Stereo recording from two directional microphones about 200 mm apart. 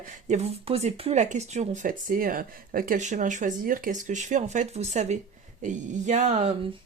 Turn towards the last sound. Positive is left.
turn(degrees=-35)  # may be behind; listen again after turning